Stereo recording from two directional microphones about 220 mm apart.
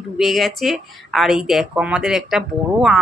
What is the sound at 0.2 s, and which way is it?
Speech, centre (ahead or behind).